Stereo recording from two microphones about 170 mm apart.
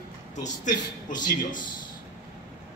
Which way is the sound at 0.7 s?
25° left (ahead or behind).